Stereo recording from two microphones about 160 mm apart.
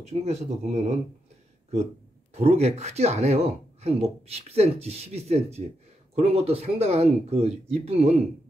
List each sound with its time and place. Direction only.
0.0 s speech: 40° right (ahead or behind)
2.3 s speech: 40° right (ahead or behind)